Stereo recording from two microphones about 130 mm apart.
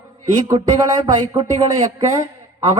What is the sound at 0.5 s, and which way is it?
Speech, 45° right (ahead or behind).